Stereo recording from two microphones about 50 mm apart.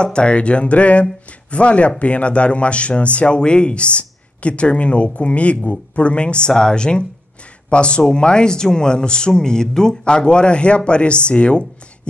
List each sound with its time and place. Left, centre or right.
0.0 s speech: centre